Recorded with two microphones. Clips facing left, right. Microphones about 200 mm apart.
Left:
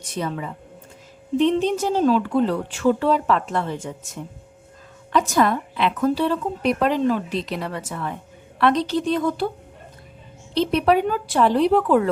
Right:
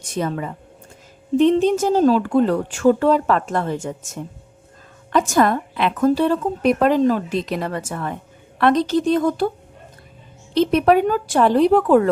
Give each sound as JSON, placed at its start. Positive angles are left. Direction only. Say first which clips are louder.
{"t": 0.1, "sound": "speech", "louder": "right 4 dB", "side_deg": -50}
{"t": 10.5, "sound": "speech", "louder": "right 3 dB", "side_deg": -50}